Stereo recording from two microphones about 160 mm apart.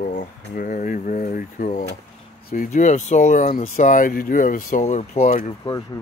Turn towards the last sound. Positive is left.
turn(degrees=25)  # may be behind; listen again after turning